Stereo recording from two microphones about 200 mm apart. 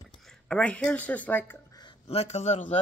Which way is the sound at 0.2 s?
5° left (ahead or behind).